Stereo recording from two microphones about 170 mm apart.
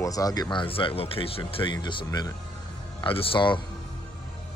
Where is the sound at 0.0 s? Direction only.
20° left (ahead or behind).